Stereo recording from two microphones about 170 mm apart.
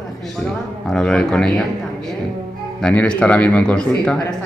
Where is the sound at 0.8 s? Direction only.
Centre (ahead or behind).